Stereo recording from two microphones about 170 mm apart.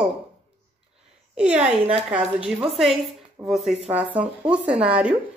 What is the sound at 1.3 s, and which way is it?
A woman's voice, 5° right (ahead or behind).